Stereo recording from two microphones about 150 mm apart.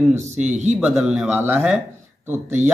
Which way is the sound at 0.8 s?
5° right (ahead or behind).